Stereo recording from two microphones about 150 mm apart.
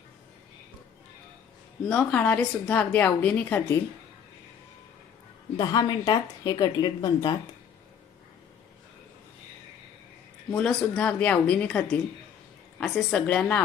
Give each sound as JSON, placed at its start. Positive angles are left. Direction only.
{"t": 1.9, "sound": "a woman's voice", "side_deg": 10}
{"t": 5.5, "sound": "speech", "side_deg": 25}
{"t": 10.5, "sound": "a woman's voice", "side_deg": 5}